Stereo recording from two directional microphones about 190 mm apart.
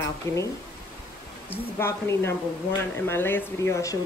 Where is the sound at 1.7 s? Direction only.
15° left (ahead or behind).